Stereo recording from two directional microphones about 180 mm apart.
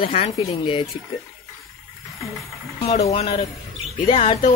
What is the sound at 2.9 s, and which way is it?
Speech, 35° left (ahead or behind).